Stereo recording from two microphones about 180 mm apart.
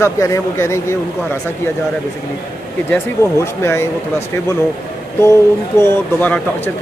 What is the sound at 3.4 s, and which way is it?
Speech, 15° left (ahead or behind).